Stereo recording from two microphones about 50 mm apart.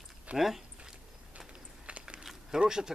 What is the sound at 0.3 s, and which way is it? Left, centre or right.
Speech, right.